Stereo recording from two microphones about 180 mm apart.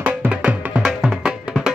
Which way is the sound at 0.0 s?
10° right (ahead or behind).